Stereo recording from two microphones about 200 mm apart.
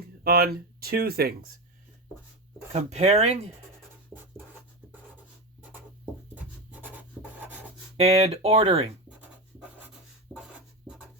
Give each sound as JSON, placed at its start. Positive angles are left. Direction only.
{"t": 0.3, "sound": "speech", "side_deg": -50}
{"t": 2.7, "sound": "speech", "side_deg": -35}
{"t": 6.3, "sound": "writing", "side_deg": -10}
{"t": 7.9, "sound": "speech", "side_deg": -30}
{"t": 10.3, "sound": "a sound", "side_deg": -5}